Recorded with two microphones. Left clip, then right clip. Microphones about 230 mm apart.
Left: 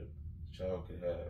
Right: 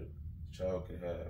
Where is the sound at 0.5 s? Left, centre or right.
Centre.